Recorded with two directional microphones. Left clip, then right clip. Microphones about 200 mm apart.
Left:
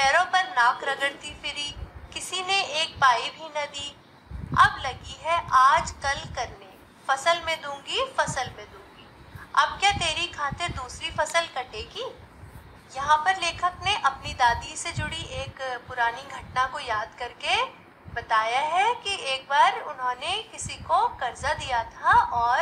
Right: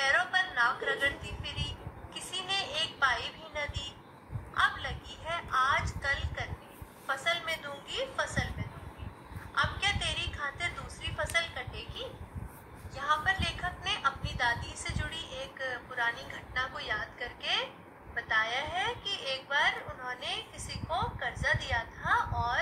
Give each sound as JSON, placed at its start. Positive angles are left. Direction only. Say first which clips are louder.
{"t": 0.1, "sound": "a sound", "louder": "left 6 dB", "side_deg": 55}
{"t": 7.1, "sound": "a woman's voice", "louder": "left 8 dB", "side_deg": 55}
{"t": 9.8, "sound": "a woman's voice", "louder": "left 8 dB", "side_deg": 55}